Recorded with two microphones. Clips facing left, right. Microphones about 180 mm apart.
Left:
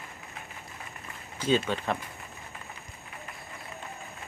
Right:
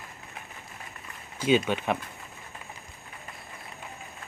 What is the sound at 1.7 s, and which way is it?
Speech, 15° right (ahead or behind).